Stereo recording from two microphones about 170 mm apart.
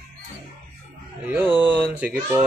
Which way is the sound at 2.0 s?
10° right (ahead or behind).